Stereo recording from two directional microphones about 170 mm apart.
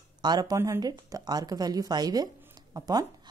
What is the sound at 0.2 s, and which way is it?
Speech, 25° right (ahead or behind).